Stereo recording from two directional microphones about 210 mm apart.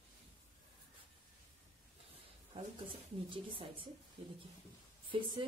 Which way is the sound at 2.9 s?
25° right (ahead or behind).